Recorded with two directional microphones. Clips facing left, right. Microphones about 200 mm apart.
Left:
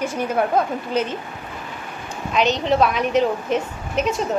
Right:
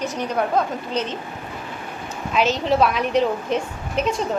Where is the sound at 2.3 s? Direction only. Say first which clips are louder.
Left 1 dB; centre (ahead or behind).